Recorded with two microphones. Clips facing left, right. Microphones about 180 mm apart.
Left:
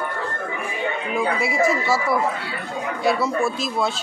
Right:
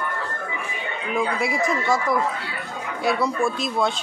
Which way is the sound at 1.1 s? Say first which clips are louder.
Even; centre (ahead or behind).